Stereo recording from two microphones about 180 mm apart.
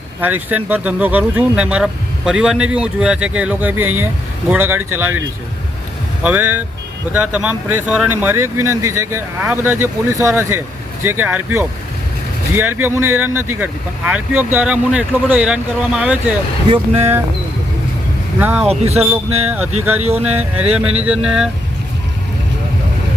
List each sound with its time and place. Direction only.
0.2 s speech: 10° right (ahead or behind)
6.2 s speech: 10° right (ahead or behind)
18.3 s speech: 10° right (ahead or behind)
18.7 s speech: 35° right (ahead or behind)
19.5 s speech: 10° right (ahead or behind)
20.0 s speech: 35° right (ahead or behind)
20.2 s speech: 10° right (ahead or behind)